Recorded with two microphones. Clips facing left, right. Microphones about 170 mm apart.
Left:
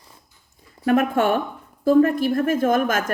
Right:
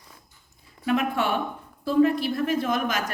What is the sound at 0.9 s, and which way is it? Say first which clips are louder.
Speech: left 6 dB; 50° left (ahead or behind).